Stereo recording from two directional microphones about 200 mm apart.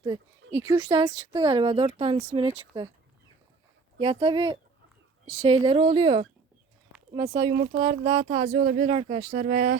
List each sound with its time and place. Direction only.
0.0 s speech: 20° right (ahead or behind)
3.9 s speech: 30° right (ahead or behind)
9.4 s speech: 40° right (ahead or behind)